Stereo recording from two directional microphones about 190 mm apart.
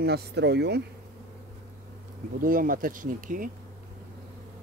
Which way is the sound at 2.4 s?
45° right (ahead or behind).